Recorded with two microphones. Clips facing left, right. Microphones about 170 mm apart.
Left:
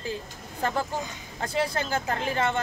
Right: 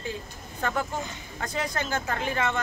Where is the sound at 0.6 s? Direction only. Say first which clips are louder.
Left 1 dB; 30° left (ahead or behind).